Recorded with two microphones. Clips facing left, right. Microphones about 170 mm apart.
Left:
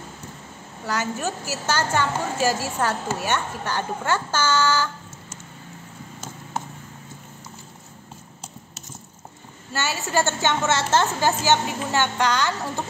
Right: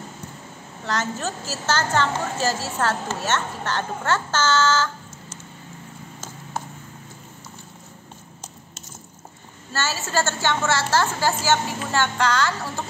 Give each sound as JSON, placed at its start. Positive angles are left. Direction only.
{"t": 0.8, "sound": "a woman's voice", "side_deg": 10}
{"t": 9.7, "sound": "a woman's voice", "side_deg": 15}